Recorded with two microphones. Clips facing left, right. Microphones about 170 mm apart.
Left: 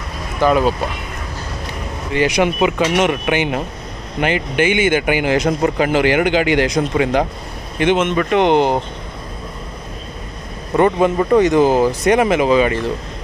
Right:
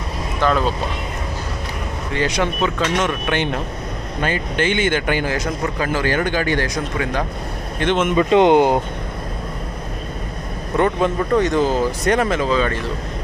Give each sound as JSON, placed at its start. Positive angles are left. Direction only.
{"t": 0.4, "sound": "a man's voice", "side_deg": 10}
{"t": 2.1, "sound": "a man's voice", "side_deg": 10}
{"t": 8.1, "sound": "speech", "side_deg": -20}
{"t": 10.8, "sound": "a man's voice", "side_deg": 5}